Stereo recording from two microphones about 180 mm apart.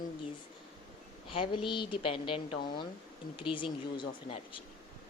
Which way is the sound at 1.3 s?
30° left (ahead or behind).